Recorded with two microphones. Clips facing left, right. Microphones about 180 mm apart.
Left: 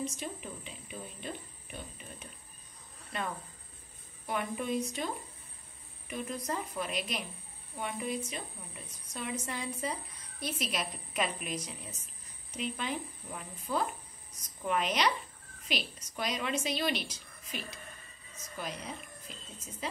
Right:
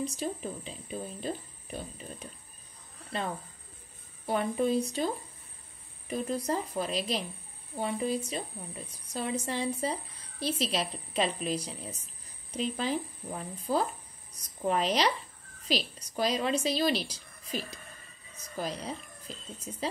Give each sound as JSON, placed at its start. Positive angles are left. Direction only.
{"t": 0.0, "sound": "a woman's voice", "side_deg": -35}